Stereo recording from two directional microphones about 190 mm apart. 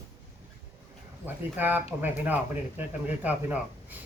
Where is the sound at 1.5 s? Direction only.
10° right (ahead or behind).